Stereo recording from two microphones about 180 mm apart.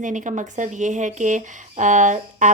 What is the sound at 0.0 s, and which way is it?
Speech, 45° right (ahead or behind).